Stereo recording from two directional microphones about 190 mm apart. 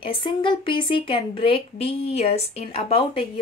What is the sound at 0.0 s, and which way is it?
A woman's voice, 25° left (ahead or behind).